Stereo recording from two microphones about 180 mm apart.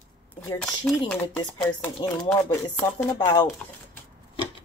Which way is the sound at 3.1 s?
25° left (ahead or behind).